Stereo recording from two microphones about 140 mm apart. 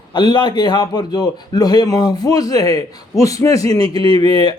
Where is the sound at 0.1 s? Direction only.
30° left (ahead or behind).